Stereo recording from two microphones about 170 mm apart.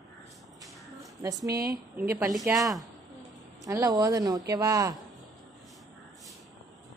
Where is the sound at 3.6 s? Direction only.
20° right (ahead or behind).